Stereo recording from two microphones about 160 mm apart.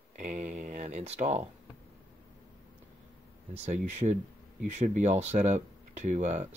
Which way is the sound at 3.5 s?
45° right (ahead or behind).